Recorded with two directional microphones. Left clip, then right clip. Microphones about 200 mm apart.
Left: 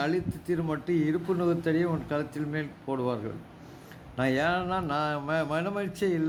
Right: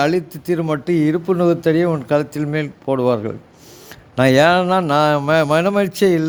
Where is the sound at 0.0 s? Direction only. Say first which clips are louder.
Right 12 dB; 50° right (ahead or behind).